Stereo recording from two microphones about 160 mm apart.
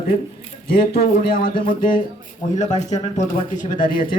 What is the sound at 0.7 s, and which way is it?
A man's voice, 70° left (ahead or behind).